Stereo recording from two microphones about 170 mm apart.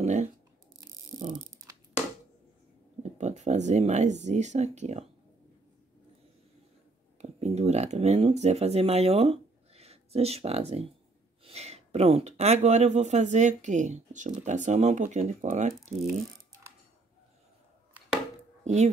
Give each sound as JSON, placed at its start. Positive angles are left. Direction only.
{"t": 0.0, "sound": "tearing", "side_deg": -45}
{"t": 3.0, "sound": "speech", "side_deg": -40}
{"t": 7.2, "sound": "speech", "side_deg": -40}
{"t": 18.6, "sound": "a sound", "side_deg": -40}